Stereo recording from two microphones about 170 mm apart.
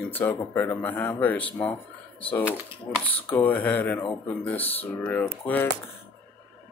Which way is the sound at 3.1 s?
10° left (ahead or behind).